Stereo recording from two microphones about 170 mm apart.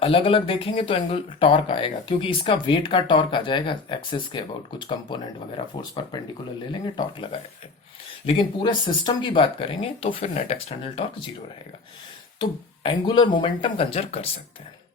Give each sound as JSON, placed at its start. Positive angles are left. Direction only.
{"t": 0.0, "sound": "speech", "side_deg": 30}
{"t": 12.4, "sound": "speech", "side_deg": 25}